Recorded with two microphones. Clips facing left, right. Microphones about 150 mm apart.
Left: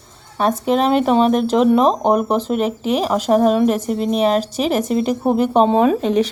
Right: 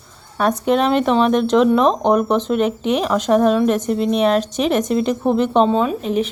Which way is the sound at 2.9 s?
35° left (ahead or behind).